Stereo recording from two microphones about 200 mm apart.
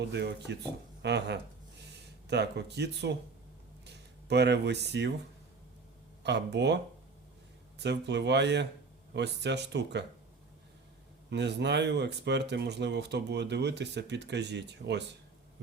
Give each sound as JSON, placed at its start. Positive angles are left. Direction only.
{"t": 0.1, "sound": "speech", "side_deg": -55}
{"t": 6.2, "sound": "speech", "side_deg": -60}
{"t": 7.8, "sound": "speech", "side_deg": -60}
{"t": 11.3, "sound": "speech", "side_deg": -60}